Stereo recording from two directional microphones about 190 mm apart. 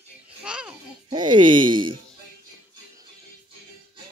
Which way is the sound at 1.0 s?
25° right (ahead or behind).